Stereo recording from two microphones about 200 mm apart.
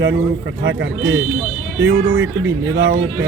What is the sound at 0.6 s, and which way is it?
Speech, 60° right (ahead or behind).